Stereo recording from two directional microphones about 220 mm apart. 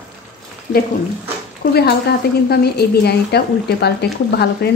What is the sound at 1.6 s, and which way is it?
A woman's voice, 45° left (ahead or behind).